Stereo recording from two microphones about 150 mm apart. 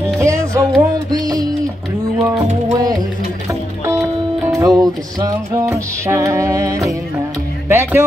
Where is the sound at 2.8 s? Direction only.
25° right (ahead or behind).